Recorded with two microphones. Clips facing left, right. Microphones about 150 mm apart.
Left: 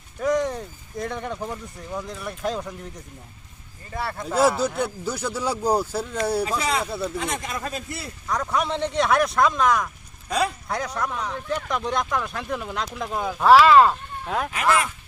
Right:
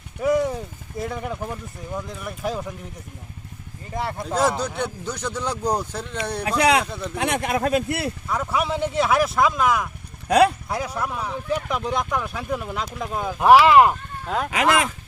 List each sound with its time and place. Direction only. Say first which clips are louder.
0.2 s speech: right 2 dB; 10° right (ahead or behind)
3.9 s speech: right 2 dB; 15° right (ahead or behind)
4.6 s speech: left 2 dB; 5° left (ahead or behind)
6.6 s speech: right 5 dB; 70° right (ahead or behind)
8.3 s speech: left 1 dB; 5° right (ahead or behind)
10.2 s speech: right 8 dB; 65° right (ahead or behind)
10.7 s speech: right 1 dB; 5° right (ahead or behind)
13.4 s speech: right 1 dB; 15° right (ahead or behind)
14.3 s speech: right 1 dB; centre (ahead or behind)
14.5 s speech: right 2 dB; 85° right